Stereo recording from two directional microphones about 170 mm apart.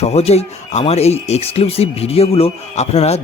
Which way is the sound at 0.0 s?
40° left (ahead or behind).